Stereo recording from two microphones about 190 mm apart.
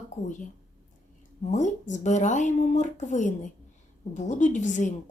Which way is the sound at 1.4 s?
40° left (ahead or behind).